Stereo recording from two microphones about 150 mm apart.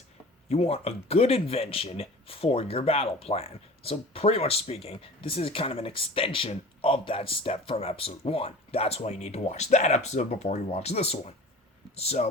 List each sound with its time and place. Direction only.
0.4 s speech: 45° left (ahead or behind)